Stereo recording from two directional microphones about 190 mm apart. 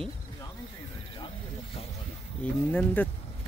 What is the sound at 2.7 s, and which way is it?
Speech, 10° left (ahead or behind).